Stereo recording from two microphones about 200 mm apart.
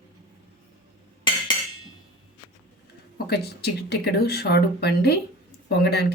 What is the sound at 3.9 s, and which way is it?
Speech, 55° left (ahead or behind).